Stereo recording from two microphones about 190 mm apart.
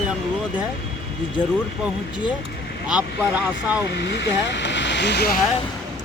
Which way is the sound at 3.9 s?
65° left (ahead or behind).